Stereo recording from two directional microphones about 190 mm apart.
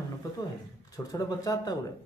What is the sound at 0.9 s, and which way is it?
Speech, 20° left (ahead or behind).